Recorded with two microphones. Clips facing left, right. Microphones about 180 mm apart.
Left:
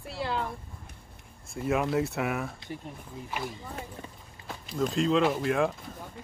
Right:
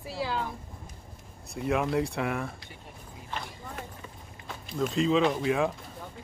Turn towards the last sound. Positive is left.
turn(degrees=0)  # may be behind; listen again after turning